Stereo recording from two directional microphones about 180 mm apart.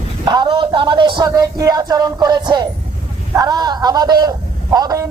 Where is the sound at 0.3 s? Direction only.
25° right (ahead or behind).